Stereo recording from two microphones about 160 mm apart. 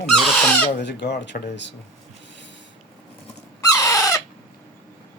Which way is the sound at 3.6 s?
20° left (ahead or behind).